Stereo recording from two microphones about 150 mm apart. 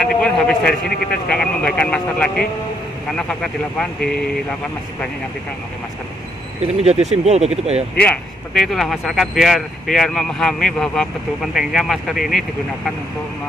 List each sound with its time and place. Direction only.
0.0 s speech: 5° left (ahead or behind)
6.6 s speech: 45° right (ahead or behind)
8.5 s speech: centre (ahead or behind)